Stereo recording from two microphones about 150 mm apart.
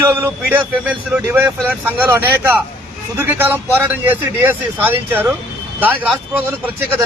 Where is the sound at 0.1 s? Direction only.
15° right (ahead or behind).